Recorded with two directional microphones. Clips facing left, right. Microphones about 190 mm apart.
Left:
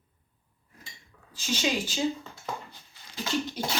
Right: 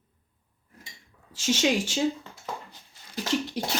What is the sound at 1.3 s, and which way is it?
Speech, 80° right.